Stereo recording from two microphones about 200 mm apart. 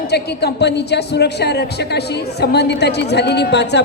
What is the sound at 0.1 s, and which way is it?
Speech, 55° left (ahead or behind).